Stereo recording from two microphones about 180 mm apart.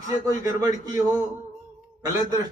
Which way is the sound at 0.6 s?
20° right (ahead or behind).